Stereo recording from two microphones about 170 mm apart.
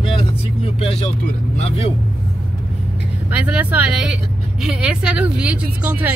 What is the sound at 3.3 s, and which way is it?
A woman's voice, 10° right (ahead or behind).